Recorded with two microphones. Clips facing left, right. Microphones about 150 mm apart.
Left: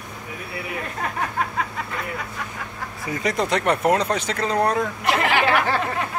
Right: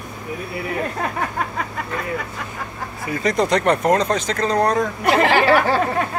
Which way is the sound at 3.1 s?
10° left (ahead or behind).